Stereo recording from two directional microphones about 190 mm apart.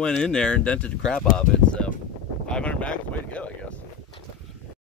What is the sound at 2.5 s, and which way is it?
Wind noise, 5° left (ahead or behind).